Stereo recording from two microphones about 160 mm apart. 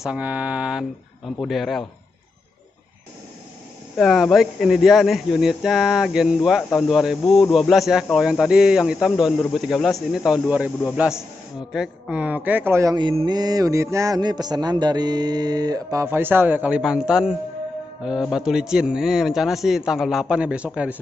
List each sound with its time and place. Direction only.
0.0 s speech: 10° right (ahead or behind)
3.9 s speech: centre (ahead or behind)
12.9 s a man's voice: 30° right (ahead or behind); by 21.0 s 10° right (ahead or behind)